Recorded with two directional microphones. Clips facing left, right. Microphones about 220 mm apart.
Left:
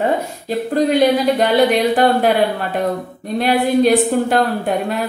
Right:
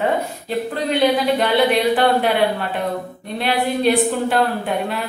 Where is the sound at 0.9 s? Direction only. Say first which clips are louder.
Left 2 dB; 45° left (ahead or behind).